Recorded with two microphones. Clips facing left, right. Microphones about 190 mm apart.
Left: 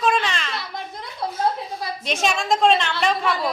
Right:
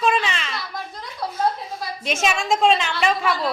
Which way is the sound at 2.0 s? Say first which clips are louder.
Right 1 dB; centre (ahead or behind).